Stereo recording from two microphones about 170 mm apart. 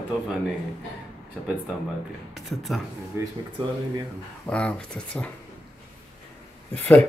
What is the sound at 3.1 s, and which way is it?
Speech, 15° right (ahead or behind).